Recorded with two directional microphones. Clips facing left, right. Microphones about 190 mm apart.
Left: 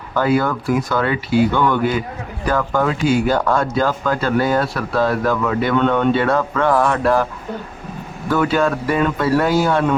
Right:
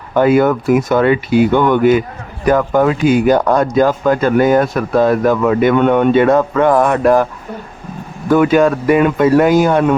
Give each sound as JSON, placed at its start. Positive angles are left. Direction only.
{"t": 0.1, "sound": "speech", "side_deg": -20}
{"t": 8.3, "sound": "speech", "side_deg": -15}